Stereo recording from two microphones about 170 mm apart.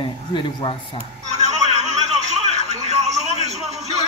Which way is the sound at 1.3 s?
40° right (ahead or behind).